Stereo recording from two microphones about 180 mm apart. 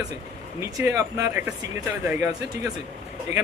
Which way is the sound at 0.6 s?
15° right (ahead or behind).